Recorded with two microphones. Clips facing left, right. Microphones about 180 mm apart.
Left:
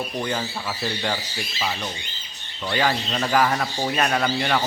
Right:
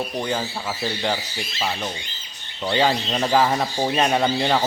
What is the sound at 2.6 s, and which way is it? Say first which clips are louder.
Speech: right 3 dB; 20° right (ahead or behind).